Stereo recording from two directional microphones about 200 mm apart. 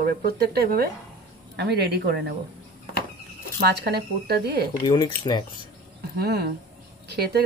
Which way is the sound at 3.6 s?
55° right (ahead or behind).